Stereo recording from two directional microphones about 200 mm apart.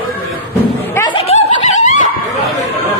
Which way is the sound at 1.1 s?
30° left (ahead or behind).